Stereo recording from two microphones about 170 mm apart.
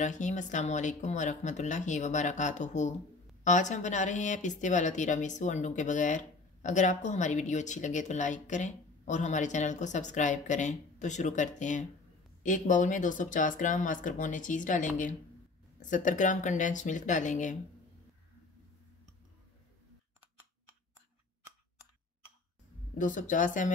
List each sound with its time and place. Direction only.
0.0 s a woman's voice: 45° left (ahead or behind)
22.9 s a woman's voice: 50° left (ahead or behind)